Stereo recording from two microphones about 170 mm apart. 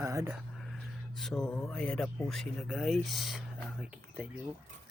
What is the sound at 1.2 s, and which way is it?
Speech, centre (ahead or behind).